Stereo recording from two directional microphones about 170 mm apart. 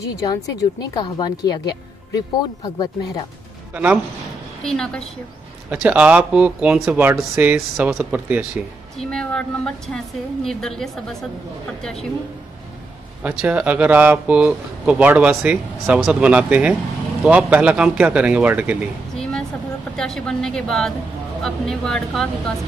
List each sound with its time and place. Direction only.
0.0 s a woman's voice: 20° left (ahead or behind)
3.7 s speech: 10° right (ahead or behind)
4.6 s a woman's voice: 5° left (ahead or behind)
5.7 s speech: 10° right (ahead or behind)
8.9 s a woman's voice: 5° left (ahead or behind)
13.2 s speech: 10° right (ahead or behind)
20.0 s a woman's voice: 5° left (ahead or behind)